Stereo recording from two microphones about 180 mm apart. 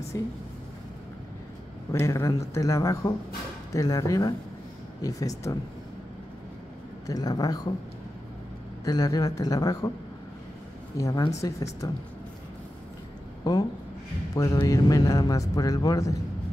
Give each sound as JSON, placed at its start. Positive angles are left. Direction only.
{"t": 0.1, "sound": "speech", "side_deg": 20}
{"t": 1.9, "sound": "speech", "side_deg": 15}
{"t": 7.1, "sound": "speech", "side_deg": 20}
{"t": 8.8, "sound": "speech", "side_deg": 20}
{"t": 11.0, "sound": "speech", "side_deg": 20}
{"t": 13.4, "sound": "a woman's voice", "side_deg": 20}